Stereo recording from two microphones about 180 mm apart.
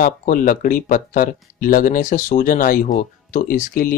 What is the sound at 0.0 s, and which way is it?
Speech, 50° left (ahead or behind).